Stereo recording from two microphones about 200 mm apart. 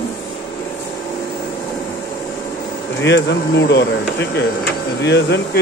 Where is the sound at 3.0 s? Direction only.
60° left (ahead or behind).